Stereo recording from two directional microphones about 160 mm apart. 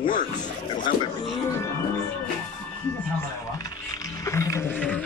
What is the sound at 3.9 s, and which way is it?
Music, 20° left (ahead or behind).